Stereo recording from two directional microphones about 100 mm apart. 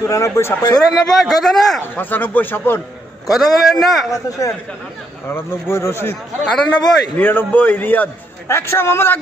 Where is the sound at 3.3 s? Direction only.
Centre (ahead or behind).